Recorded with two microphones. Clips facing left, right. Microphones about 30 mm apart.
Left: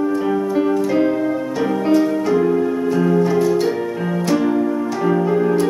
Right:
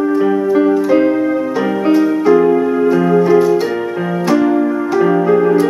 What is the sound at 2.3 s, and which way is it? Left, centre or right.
Music, right.